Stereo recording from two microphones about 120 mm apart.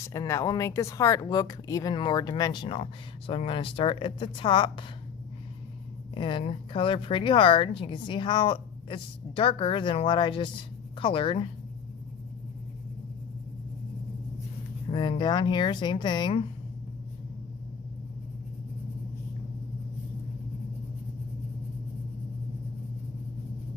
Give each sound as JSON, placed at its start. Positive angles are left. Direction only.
{"t": 0.1, "sound": "speech", "side_deg": 25}
{"t": 2.6, "sound": "a woman's voice", "side_deg": 50}
{"t": 6.1, "sound": "a woman's voice", "side_deg": 40}
{"t": 14.8, "sound": "a sound", "side_deg": 40}
{"t": 15.2, "sound": "speech", "side_deg": 40}